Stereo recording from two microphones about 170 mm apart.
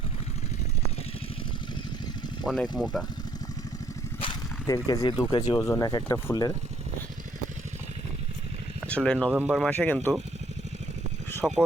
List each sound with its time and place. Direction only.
2.7 s speech: centre (ahead or behind)
4.6 s speech: 20° left (ahead or behind)
8.9 s speech: 5° left (ahead or behind)
11.4 s speech: 5° right (ahead or behind)